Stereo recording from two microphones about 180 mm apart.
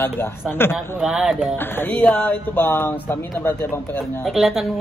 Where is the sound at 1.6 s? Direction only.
10° left (ahead or behind).